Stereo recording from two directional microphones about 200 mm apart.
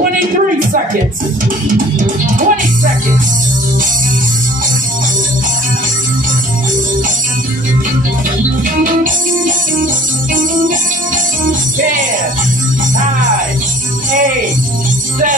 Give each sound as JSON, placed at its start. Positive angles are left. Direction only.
{"t": 2.0, "sound": "speech", "side_deg": -40}
{"t": 8.8, "sound": "music", "side_deg": -40}
{"t": 11.4, "sound": "music", "side_deg": -40}